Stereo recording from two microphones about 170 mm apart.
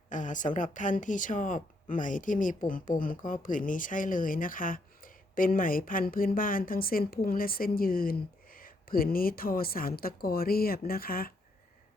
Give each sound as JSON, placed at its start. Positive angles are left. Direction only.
{"t": 0.1, "sound": "a woman's voice", "side_deg": 50}